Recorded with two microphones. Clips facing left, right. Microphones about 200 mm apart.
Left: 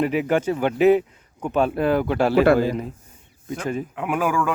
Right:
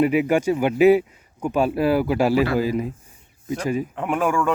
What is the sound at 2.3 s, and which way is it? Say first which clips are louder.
Speech: left 4 dB; 55° left (ahead or behind).